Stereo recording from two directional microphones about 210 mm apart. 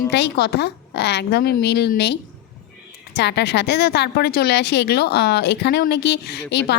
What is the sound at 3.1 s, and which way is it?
A woman's voice, 55° left (ahead or behind).